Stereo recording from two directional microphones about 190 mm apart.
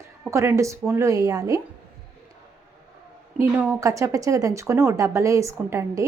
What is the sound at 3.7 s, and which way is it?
A woman's voice, 15° right (ahead or behind).